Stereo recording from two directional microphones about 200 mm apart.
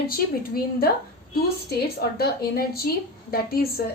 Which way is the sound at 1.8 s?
50° left (ahead or behind).